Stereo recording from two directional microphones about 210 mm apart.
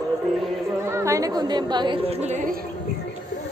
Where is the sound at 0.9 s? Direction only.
15° right (ahead or behind); by 2.5 s 35° right (ahead or behind).